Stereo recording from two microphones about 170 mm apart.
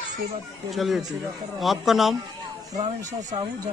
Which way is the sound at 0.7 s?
Centre (ahead or behind).